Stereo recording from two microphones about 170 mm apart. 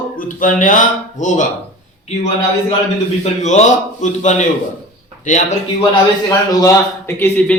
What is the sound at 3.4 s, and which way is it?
Speech, 45° left (ahead or behind).